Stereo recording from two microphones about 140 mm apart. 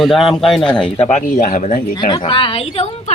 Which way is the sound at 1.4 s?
65° left (ahead or behind).